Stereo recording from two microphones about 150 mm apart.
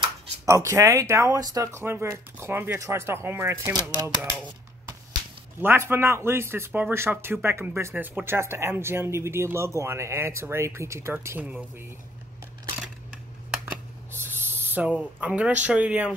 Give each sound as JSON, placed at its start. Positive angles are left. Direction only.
{"t": 0.5, "sound": "speech", "side_deg": -20}
{"t": 5.6, "sound": "speech", "side_deg": -15}
{"t": 14.1, "sound": "speech", "side_deg": -15}